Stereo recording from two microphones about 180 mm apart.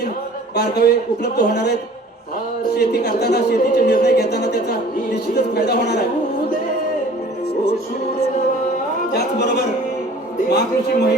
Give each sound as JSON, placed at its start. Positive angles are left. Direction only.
{"t": 0.5, "sound": "speech", "side_deg": 60}
{"t": 9.4, "sound": "speech", "side_deg": 70}